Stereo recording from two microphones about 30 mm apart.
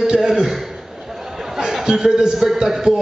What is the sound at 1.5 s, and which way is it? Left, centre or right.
A man's voice, centre.